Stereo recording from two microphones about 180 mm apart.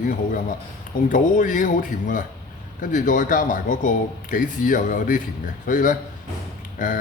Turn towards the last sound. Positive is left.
turn(degrees=45)  # may be behind; listen again after turning